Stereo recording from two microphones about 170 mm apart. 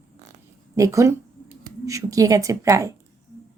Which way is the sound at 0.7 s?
20° right (ahead or behind).